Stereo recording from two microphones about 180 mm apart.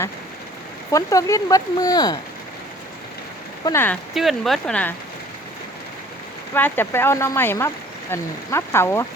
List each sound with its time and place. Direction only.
0.9 s speech: 20° left (ahead or behind)
3.7 s speech: 10° left (ahead or behind)
4.1 s speech: centre (ahead or behind)
6.5 s speech: 10° left (ahead or behind)